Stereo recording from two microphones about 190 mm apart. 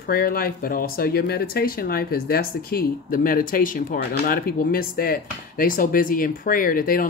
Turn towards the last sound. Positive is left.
turn(degrees=50)  # may be behind; listen again after turning